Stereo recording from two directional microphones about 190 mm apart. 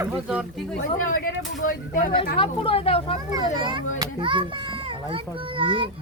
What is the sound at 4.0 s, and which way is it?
A child's voice, 25° right (ahead or behind).